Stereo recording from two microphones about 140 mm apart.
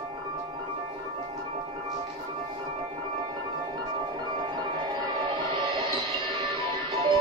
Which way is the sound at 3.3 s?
35° right (ahead or behind).